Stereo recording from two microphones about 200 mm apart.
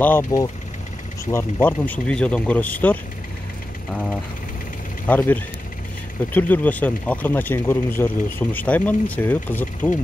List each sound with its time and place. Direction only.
0.0 s speech: 15° left (ahead or behind)